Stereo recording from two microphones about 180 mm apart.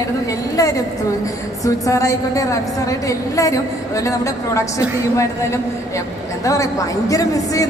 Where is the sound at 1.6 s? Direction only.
20° left (ahead or behind).